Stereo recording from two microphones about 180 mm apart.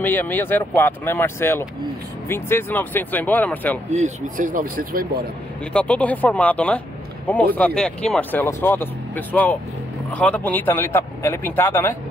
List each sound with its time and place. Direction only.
0.0 s speech: 10° left (ahead or behind)
3.9 s speech: 45° right (ahead or behind)
5.7 s speech: 5° left (ahead or behind)